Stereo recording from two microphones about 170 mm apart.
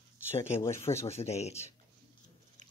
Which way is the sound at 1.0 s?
35° left (ahead or behind).